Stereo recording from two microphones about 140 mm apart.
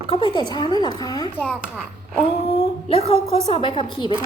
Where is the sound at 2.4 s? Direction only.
45° left (ahead or behind).